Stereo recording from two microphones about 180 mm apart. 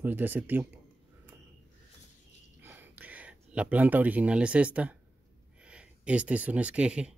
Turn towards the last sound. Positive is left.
turn(degrees=-5)  # may be behind; listen again after turning